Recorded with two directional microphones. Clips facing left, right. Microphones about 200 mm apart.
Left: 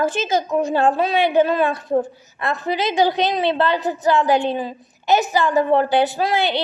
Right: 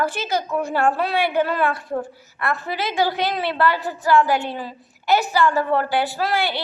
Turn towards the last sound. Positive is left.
turn(degrees=20)  # may be behind; listen again after turning